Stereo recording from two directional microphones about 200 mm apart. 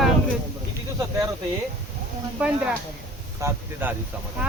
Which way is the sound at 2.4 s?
5° right (ahead or behind).